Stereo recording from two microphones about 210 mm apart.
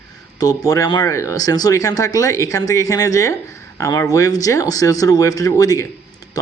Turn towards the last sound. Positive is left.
turn(degrees=15)  # may be behind; listen again after turning